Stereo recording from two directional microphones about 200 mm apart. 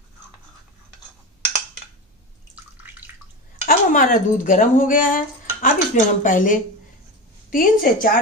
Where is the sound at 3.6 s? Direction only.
40° left (ahead or behind).